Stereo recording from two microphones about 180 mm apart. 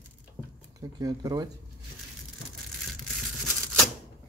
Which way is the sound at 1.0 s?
20° right (ahead or behind).